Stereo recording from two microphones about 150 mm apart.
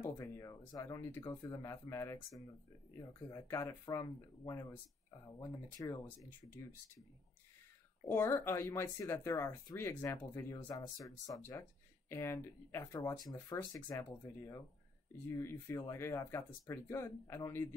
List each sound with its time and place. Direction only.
0.0 s speech: 20° left (ahead or behind)
8.0 s speech: 15° left (ahead or behind)